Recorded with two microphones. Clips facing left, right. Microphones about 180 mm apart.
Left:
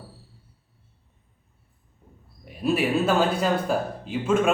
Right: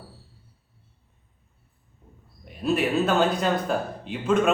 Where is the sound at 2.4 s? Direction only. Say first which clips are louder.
Even; 5° left (ahead or behind).